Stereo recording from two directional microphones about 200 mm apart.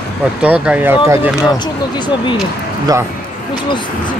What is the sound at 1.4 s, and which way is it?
Speech, 20° left (ahead or behind).